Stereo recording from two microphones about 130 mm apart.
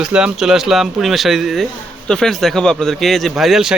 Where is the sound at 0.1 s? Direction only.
5° right (ahead or behind).